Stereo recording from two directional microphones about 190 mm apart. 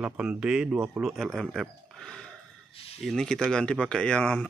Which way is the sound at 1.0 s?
Centre (ahead or behind).